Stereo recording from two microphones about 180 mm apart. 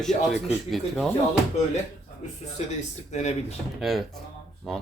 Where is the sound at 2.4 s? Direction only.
40° left (ahead or behind).